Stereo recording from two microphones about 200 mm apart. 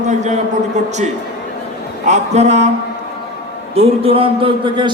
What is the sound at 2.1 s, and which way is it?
Speech, 35° right (ahead or behind).